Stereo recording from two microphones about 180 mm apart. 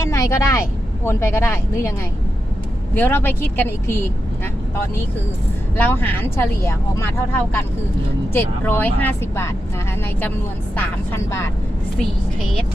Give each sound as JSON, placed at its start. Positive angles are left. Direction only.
{"t": 0.0, "sound": "a woman's voice", "side_deg": 15}
{"t": 2.9, "sound": "speech", "side_deg": 10}
{"t": 5.7, "sound": "speech", "side_deg": 10}
{"t": 10.8, "sound": "speech", "side_deg": 15}